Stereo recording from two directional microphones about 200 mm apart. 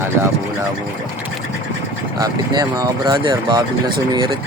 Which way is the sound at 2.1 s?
20° right (ahead or behind).